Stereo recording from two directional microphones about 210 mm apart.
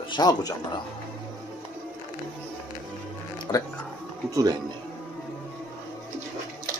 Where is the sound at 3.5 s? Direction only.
20° left (ahead or behind).